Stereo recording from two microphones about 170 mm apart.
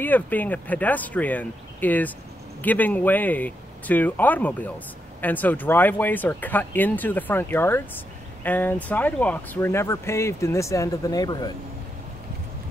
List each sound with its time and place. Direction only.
0.0 s speech: 10° left (ahead or behind)